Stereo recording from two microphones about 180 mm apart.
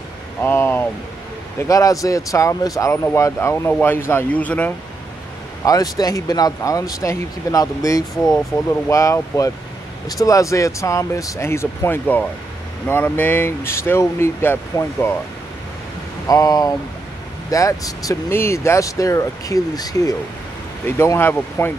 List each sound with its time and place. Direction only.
0.4 s a sound: 10° left (ahead or behind)
1.7 s speech: 20° left (ahead or behind)
5.7 s speech: 20° left (ahead or behind)
16.3 s speech: 20° left (ahead or behind)